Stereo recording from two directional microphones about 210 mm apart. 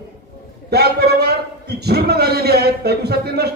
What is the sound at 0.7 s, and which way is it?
A man's voice, 50° right (ahead or behind).